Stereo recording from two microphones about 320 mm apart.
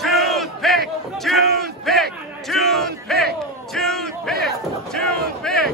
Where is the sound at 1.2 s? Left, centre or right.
Centre.